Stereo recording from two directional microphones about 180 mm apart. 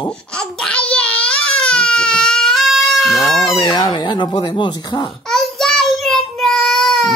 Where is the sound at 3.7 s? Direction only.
25° left (ahead or behind).